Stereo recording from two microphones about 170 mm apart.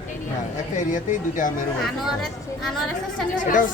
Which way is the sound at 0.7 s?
50° left (ahead or behind).